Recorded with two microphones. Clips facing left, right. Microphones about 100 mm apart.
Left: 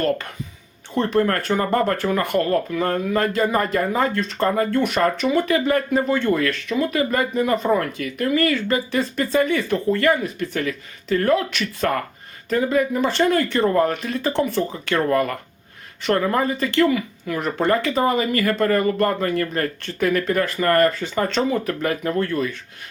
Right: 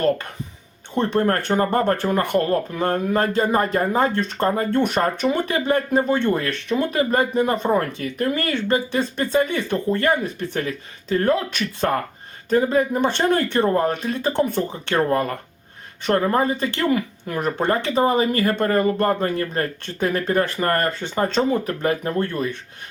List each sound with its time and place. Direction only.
1.1 s speech: 30° right (ahead or behind)
16.9 s speech: 40° right (ahead or behind)
17.6 s speech: 30° right (ahead or behind)